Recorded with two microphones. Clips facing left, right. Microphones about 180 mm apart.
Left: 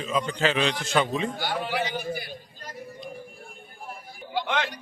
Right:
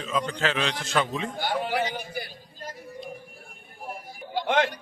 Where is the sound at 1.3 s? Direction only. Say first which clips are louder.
Right 2 dB; 50° right (ahead or behind).